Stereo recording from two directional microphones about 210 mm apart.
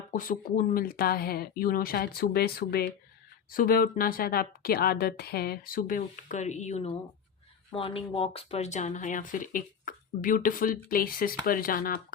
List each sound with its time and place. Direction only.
0.1 s speech: 40° left (ahead or behind)